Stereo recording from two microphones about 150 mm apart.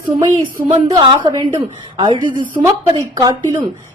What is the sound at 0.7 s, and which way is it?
A woman's voice, 30° right (ahead or behind).